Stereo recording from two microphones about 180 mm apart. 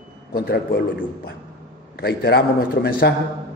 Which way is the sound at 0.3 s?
55° left (ahead or behind).